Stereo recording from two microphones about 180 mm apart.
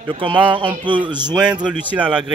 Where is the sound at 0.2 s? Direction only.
30° right (ahead or behind).